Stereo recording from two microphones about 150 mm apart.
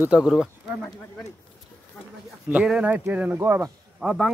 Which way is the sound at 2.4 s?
10° right (ahead or behind).